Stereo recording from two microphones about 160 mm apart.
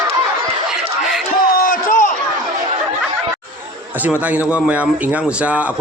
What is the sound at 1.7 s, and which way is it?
Crowd, 55° left (ahead or behind).